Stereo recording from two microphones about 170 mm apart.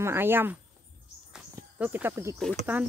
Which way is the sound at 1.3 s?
10° right (ahead or behind).